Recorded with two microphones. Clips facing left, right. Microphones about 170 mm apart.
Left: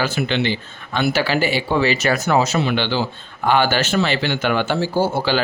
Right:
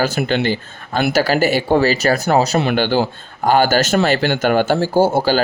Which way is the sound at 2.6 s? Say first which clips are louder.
Right 4 dB; 50° right (ahead or behind).